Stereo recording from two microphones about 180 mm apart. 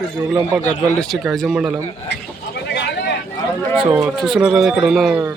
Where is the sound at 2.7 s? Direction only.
75° left (ahead or behind).